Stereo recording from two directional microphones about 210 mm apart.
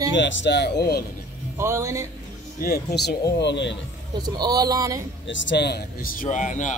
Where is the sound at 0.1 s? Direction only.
60° left (ahead or behind).